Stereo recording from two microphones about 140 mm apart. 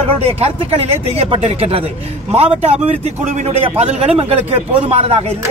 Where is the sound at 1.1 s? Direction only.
45° right (ahead or behind).